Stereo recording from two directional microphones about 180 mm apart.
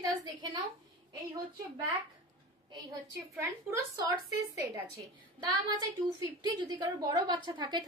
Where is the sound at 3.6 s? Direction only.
10° right (ahead or behind).